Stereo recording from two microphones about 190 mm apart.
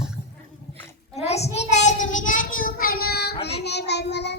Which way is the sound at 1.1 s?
35° left (ahead or behind).